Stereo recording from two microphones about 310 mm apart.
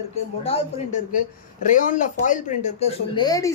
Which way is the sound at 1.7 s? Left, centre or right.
Left.